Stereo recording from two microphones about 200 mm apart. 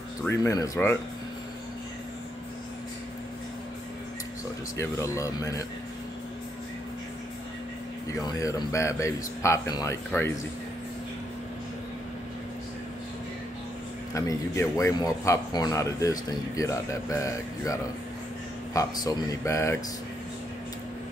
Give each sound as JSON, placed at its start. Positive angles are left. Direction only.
{"t": 0.3, "sound": "speech", "side_deg": 15}
{"t": 4.7, "sound": "speech", "side_deg": 15}
{"t": 8.1, "sound": "speech", "side_deg": 15}
{"t": 14.1, "sound": "speech", "side_deg": 15}